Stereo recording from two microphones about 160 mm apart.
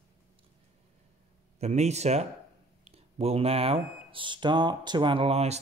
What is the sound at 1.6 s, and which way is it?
Speech, 45° right (ahead or behind).